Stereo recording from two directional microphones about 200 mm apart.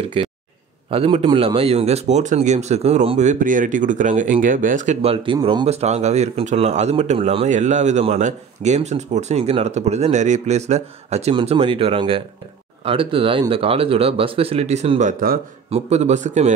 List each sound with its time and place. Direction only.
0.2 s a man's voice: 25° right (ahead or behind)